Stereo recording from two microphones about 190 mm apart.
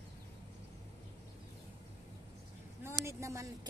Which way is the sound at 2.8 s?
15° right (ahead or behind).